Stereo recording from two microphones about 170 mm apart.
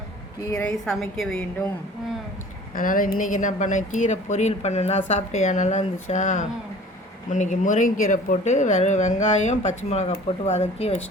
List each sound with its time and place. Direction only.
0.4 s a woman's voice: 10° left (ahead or behind)
2.7 s speech: 55° left (ahead or behind)